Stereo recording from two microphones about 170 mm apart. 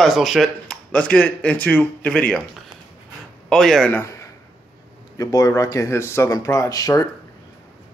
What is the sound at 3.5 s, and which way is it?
Speech, centre (ahead or behind).